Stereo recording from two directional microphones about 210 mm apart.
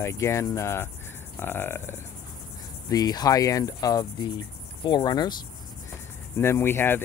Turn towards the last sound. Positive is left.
turn(degrees=10)  # may be behind; listen again after turning